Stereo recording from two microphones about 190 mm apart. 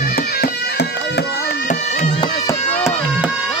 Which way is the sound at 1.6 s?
40° left (ahead or behind).